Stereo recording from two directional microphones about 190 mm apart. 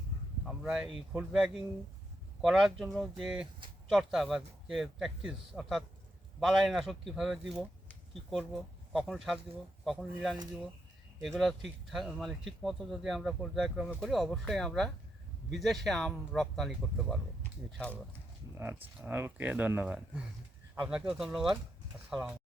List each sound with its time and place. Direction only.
0.4 s speech: 5° right (ahead or behind)
18.5 s speech: 10° right (ahead or behind)